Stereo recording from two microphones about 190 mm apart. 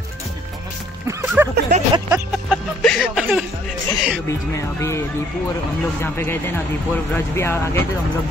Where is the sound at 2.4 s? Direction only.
Centre (ahead or behind).